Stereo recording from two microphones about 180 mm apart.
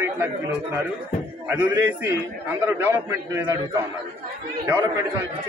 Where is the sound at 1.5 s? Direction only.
10° right (ahead or behind).